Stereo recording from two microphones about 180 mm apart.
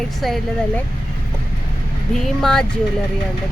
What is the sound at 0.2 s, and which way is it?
Speech, centre (ahead or behind).